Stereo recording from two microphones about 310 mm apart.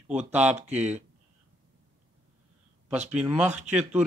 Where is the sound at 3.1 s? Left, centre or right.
Centre.